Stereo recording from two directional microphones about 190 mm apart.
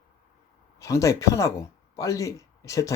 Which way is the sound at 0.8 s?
15° left (ahead or behind).